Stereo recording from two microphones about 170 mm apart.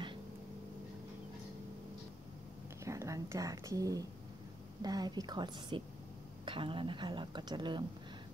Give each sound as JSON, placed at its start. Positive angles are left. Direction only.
{"t": 2.8, "sound": "speech", "side_deg": -15}